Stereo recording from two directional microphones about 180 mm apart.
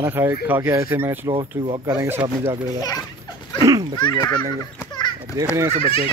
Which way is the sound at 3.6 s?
20° right (ahead or behind).